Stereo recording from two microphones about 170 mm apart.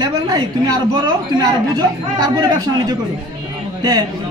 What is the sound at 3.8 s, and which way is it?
Speech, 25° right (ahead or behind).